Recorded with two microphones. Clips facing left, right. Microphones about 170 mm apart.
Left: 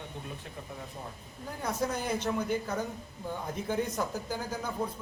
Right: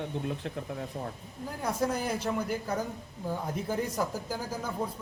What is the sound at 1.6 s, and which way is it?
A man's voice, 10° right (ahead or behind).